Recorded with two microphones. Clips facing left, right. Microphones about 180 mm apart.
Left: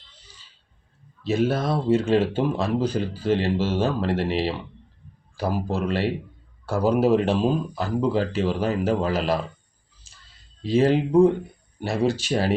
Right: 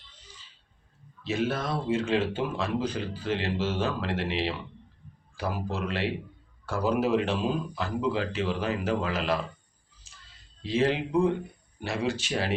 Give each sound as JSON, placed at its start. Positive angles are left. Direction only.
{"t": 1.2, "sound": "speech", "side_deg": 40}
{"t": 10.6, "sound": "speech", "side_deg": 40}